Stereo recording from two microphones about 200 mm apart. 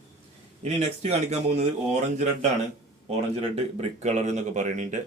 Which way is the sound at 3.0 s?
30° right (ahead or behind).